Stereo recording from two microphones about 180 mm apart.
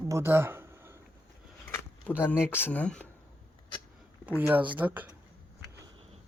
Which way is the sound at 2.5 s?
10° left (ahead or behind).